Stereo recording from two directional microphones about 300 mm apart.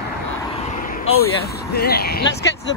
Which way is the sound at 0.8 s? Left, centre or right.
Left.